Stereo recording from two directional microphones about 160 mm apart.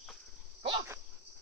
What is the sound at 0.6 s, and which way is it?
Dog, 35° right (ahead or behind).